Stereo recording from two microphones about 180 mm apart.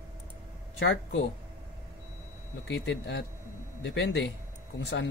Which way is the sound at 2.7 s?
80° left.